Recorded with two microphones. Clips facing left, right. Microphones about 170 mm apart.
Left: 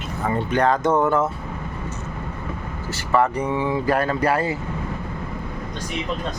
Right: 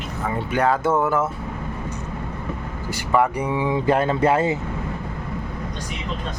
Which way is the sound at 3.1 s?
10° right (ahead or behind).